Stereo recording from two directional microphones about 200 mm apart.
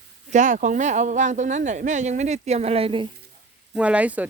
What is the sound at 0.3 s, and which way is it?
Speech, 40° right (ahead or behind).